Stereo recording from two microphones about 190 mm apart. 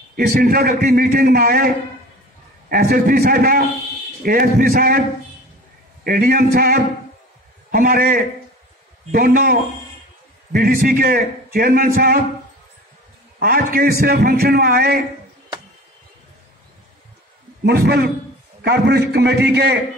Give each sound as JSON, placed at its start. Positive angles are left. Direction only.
{"t": 0.1, "sound": "a man's voice", "side_deg": -50}
{"t": 2.7, "sound": "a man's voice", "side_deg": -50}
{"t": 6.0, "sound": "a man's voice", "side_deg": -50}
{"t": 13.4, "sound": "a man's voice", "side_deg": -50}
{"t": 17.6, "sound": "a man's voice", "side_deg": -55}